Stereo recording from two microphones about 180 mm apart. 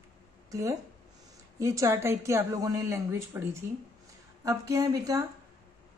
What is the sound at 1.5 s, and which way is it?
A woman's voice, 15° right (ahead or behind).